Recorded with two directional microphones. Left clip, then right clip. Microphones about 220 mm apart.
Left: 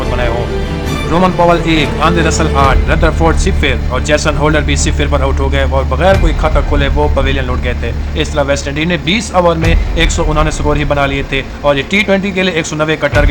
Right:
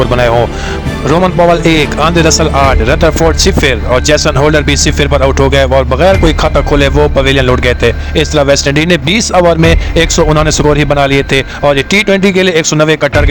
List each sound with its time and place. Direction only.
1.1 s speech: 40° right (ahead or behind)